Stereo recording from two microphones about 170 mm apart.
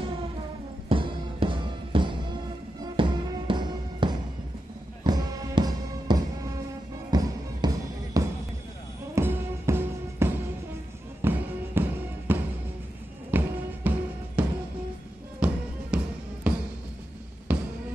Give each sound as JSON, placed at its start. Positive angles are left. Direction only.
{"t": 0.8, "sound": "music", "side_deg": -30}